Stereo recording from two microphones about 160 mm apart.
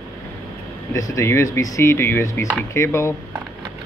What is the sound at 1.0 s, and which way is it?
Speech, 20° left (ahead or behind).